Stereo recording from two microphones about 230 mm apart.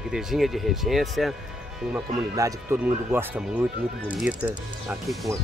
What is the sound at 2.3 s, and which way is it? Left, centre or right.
Speech, centre.